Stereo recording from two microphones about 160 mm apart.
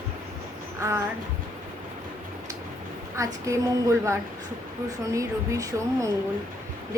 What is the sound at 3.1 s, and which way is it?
A woman's voice, 20° right (ahead or behind).